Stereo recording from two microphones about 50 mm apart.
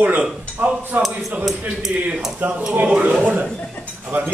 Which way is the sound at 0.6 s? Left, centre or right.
Right.